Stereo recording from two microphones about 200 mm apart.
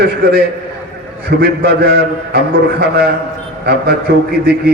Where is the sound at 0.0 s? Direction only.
50° right (ahead or behind).